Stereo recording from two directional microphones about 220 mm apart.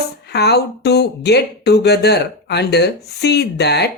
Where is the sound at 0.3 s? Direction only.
50° left (ahead or behind).